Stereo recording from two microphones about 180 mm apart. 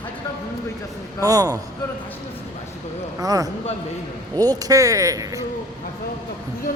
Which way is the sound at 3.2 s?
20° right (ahead or behind).